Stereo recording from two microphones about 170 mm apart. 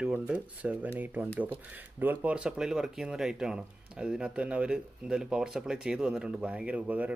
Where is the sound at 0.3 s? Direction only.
10° right (ahead or behind).